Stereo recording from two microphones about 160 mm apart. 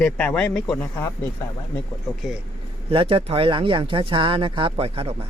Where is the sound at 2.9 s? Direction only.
35° right (ahead or behind).